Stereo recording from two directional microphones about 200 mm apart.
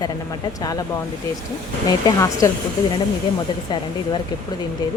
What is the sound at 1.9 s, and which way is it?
Speech, 15° left (ahead or behind).